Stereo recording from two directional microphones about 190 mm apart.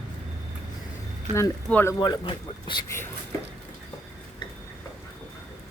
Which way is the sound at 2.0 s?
25° left (ahead or behind).